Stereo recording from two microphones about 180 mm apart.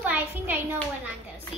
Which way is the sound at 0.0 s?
10° right (ahead or behind).